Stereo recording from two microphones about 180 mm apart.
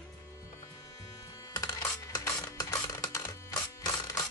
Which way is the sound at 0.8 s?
20° left (ahead or behind).